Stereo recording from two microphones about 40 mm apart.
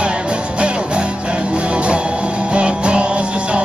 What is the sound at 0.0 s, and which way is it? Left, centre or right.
Music, right.